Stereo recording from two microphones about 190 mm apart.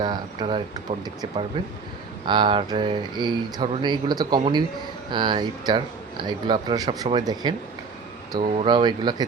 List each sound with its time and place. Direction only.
0.0 s speech: 25° right (ahead or behind)
8.5 s speech: 25° right (ahead or behind)